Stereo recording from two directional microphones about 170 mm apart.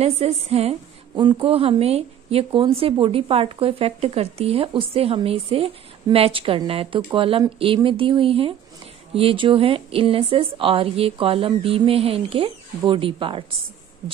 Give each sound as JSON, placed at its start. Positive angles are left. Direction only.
{"t": 0.0, "sound": "a woman's voice", "side_deg": -35}